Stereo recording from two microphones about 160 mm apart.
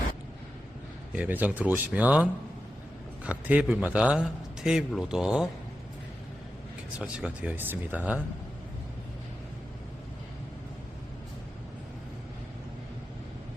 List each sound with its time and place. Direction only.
1.1 s a man's voice: 10° right (ahead or behind)
6.9 s speech: 5° right (ahead or behind)